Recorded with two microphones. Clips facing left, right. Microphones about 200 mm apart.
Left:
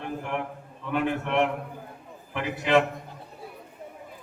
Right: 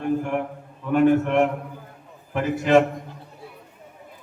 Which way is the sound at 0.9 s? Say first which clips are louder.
Right 9 dB; 45° right (ahead or behind).